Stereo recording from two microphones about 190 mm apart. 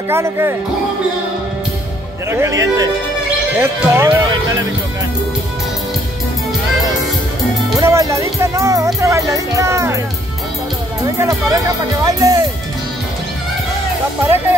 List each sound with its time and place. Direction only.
0.1 s music: 15° right (ahead or behind)
2.3 s music: 15° right (ahead or behind)
7.8 s music: 15° right (ahead or behind)
11.1 s music: 15° right (ahead or behind)